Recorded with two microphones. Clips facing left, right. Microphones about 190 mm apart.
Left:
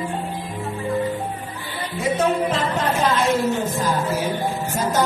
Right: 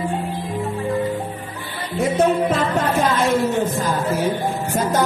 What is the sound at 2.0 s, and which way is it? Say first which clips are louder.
Music: right 3 dB; 55° right (ahead or behind).